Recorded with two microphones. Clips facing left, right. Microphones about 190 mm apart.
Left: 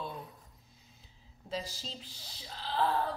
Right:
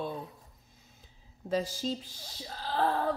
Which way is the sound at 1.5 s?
50° right (ahead or behind).